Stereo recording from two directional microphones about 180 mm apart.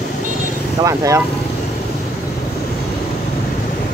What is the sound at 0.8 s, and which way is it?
Speech, 15° right (ahead or behind).